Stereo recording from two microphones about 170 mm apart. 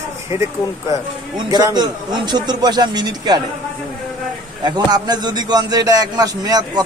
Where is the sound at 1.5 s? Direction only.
25° right (ahead or behind).